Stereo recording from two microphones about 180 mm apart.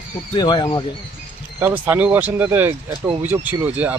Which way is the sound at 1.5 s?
10° right (ahead or behind).